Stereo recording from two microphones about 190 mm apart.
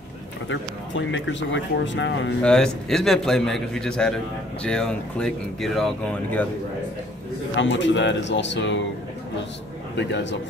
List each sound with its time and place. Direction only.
0.5 s speech: 75° left (ahead or behind)
2.4 s a man's voice: 5° left (ahead or behind)
7.5 s speech: 70° left (ahead or behind)